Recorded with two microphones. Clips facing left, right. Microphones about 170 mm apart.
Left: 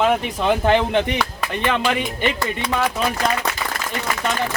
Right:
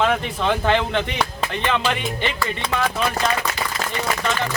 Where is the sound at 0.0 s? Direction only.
10° left (ahead or behind).